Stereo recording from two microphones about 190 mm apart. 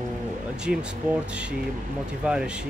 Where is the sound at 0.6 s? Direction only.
5° right (ahead or behind).